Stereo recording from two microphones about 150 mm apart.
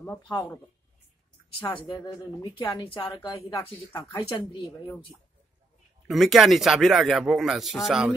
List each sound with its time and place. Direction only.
1.6 s a woman's voice: 25° left (ahead or behind)
6.0 s speech: centre (ahead or behind)